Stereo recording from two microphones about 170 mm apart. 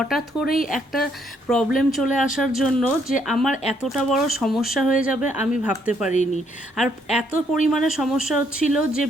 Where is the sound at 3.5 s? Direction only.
40° left (ahead or behind).